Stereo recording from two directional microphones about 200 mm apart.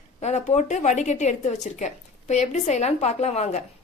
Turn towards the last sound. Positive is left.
turn(degrees=35)  # may be behind; listen again after turning